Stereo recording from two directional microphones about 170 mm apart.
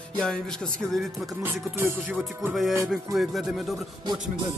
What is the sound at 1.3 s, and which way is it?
Music, 20° right (ahead or behind).